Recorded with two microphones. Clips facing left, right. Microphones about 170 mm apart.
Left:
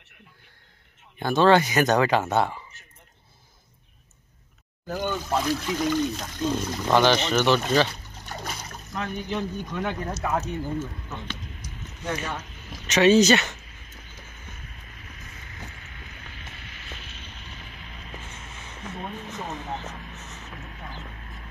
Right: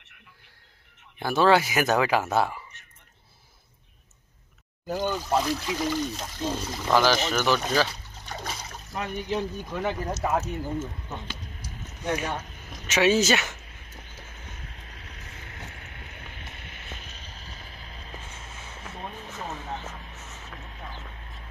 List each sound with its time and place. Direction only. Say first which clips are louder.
1.2 s speech: left 2 dB; 5° right (ahead or behind)
5.0 s speech: even; 5° right (ahead or behind)
12.1 s speech: right 2 dB; 15° right (ahead or behind)
14.9 s a sound: even; 75° right (ahead or behind); by 18.1 s 35° right (ahead or behind)